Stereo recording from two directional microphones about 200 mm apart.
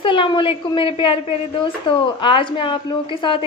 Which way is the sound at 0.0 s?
25° left (ahead or behind).